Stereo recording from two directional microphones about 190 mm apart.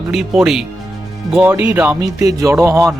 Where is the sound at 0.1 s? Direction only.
Centre (ahead or behind).